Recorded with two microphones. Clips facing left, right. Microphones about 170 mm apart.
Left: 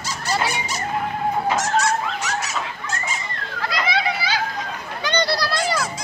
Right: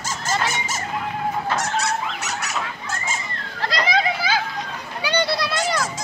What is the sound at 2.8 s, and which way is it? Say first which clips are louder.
Squeak: left 1 dB; 60° left (ahead or behind).